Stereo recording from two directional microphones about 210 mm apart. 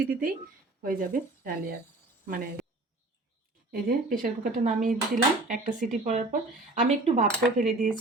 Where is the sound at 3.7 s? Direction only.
45° right (ahead or behind).